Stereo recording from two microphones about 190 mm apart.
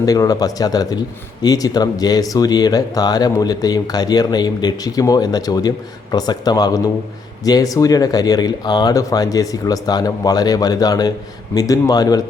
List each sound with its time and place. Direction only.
0.0 s speech: 20° left (ahead or behind)